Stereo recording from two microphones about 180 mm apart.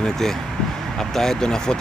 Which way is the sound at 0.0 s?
Centre (ahead or behind).